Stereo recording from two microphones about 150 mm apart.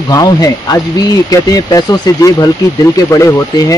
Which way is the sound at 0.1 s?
25° left (ahead or behind).